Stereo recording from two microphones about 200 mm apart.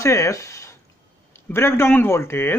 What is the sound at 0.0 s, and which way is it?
Speech, 15° left (ahead or behind).